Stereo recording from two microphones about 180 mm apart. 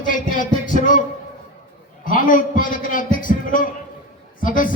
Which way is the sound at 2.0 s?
50° left (ahead or behind).